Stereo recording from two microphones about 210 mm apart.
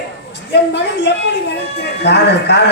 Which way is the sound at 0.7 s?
55° left (ahead or behind).